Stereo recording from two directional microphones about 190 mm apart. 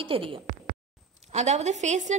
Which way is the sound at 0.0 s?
30° right (ahead or behind).